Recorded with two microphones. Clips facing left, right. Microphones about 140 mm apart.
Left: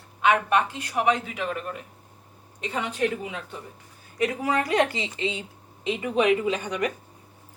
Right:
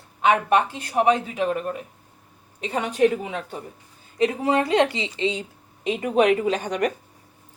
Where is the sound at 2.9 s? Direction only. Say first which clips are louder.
Right 10 dB; 40° right (ahead or behind).